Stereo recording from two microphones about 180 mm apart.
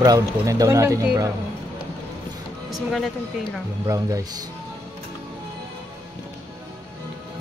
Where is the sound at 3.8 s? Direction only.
20° right (ahead or behind).